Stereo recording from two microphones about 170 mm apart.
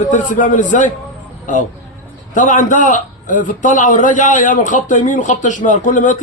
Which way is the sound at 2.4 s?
50° left (ahead or behind).